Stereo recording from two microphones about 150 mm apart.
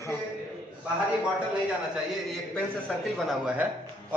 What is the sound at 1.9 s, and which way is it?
A man's voice, centre (ahead or behind).